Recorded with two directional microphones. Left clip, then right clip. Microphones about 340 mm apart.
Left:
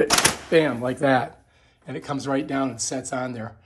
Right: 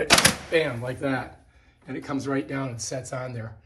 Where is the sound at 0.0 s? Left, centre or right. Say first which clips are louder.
Even; left.